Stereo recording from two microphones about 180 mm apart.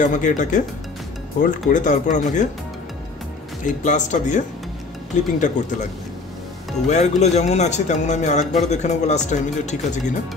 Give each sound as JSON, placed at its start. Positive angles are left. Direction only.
{"t": 0.0, "sound": "speech", "side_deg": 45}
{"t": 3.6, "sound": "speech", "side_deg": 45}
{"t": 6.9, "sound": "speech", "side_deg": 40}